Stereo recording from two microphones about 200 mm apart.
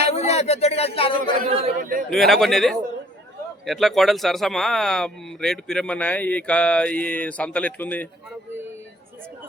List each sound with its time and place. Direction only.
0.0 s speech: 30° left (ahead or behind)
1.5 s speech: 30° right (ahead or behind)
1.8 s a man's voice: 40° right (ahead or behind)
2.0 s speech: centre (ahead or behind)